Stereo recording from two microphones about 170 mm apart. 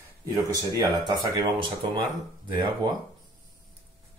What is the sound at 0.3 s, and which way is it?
Speech, 20° right (ahead or behind).